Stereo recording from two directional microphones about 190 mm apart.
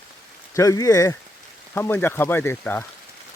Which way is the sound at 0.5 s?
15° left (ahead or behind).